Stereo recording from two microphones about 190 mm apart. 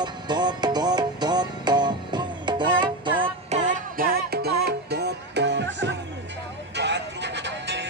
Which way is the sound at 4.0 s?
55° right (ahead or behind).